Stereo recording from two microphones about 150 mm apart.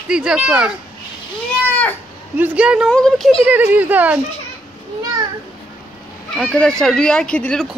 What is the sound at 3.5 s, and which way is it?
Speech, 10° right (ahead or behind).